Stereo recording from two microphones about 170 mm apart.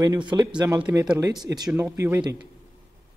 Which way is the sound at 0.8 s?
10° right (ahead or behind).